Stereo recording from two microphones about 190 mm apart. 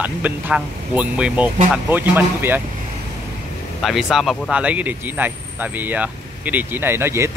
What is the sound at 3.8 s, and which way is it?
Ding, centre (ahead or behind).